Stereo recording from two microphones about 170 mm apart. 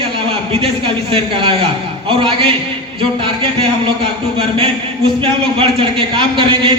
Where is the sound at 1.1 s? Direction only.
30° right (ahead or behind).